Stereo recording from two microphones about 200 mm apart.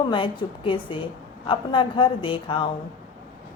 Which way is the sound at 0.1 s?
25° left (ahead or behind).